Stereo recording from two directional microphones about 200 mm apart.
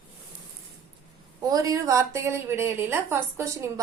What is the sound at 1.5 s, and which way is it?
A woman's voice, 15° right (ahead or behind).